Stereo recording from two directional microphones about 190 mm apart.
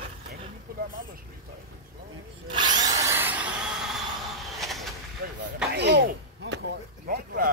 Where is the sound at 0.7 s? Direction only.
50° right (ahead or behind).